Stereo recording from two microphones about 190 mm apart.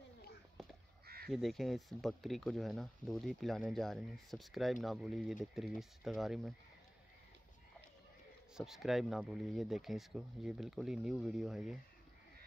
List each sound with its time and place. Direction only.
1.0 s crow: 55° right (ahead or behind)
1.3 s speech: centre (ahead or behind)
8.5 s speech: centre (ahead or behind)